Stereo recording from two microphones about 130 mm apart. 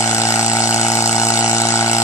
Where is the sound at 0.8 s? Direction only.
25° left (ahead or behind).